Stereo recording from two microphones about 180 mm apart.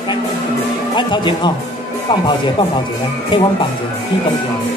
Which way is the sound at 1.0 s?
25° left (ahead or behind).